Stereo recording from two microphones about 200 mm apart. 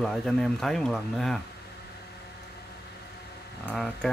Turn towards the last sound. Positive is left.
turn(degrees=5)  # may be behind; listen again after turning